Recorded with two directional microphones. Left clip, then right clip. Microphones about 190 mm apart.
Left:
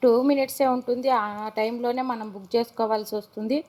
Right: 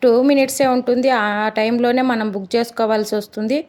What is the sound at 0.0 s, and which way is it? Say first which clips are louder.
A woman's voice: right 6 dB; 35° right (ahead or behind).